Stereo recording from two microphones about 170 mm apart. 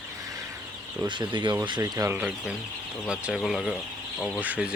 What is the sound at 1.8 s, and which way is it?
Speech, 15° right (ahead or behind).